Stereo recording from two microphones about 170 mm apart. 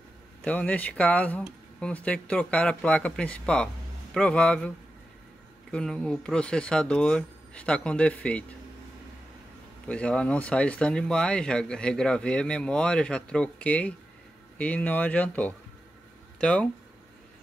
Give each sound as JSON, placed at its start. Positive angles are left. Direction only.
{"t": 0.4, "sound": "speech", "side_deg": 10}
{"t": 9.8, "sound": "speech", "side_deg": 5}